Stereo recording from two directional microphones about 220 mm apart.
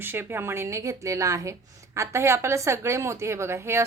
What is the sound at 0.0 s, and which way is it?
A woman's voice, 10° right (ahead or behind).